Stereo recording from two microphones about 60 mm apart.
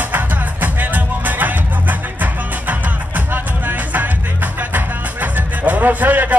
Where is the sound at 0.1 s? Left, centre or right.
Right.